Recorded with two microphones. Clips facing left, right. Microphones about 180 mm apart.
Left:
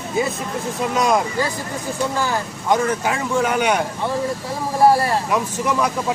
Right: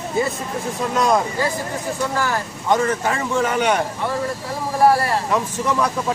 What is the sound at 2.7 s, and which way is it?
Speech, centre (ahead or behind).